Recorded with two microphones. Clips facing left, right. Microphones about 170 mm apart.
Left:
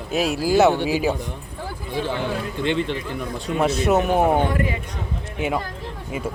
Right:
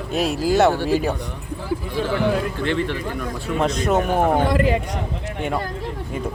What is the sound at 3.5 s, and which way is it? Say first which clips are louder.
Speech: left 1 dB; 5° left (ahead or behind).